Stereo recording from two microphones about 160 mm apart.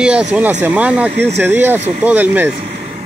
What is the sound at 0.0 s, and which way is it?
Speech, 5° right (ahead or behind).